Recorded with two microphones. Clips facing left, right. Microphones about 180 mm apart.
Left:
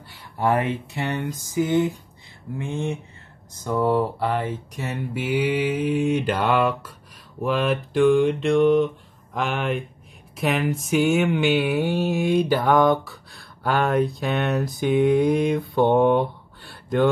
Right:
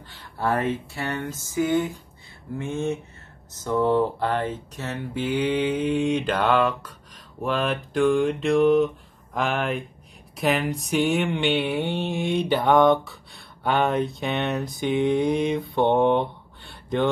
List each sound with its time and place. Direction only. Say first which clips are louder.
0.1 s speech: left 3 dB; 15° left (ahead or behind)
2.7 s speech: right 2 dB; 15° left (ahead or behind); by 17.1 s centre (ahead or behind)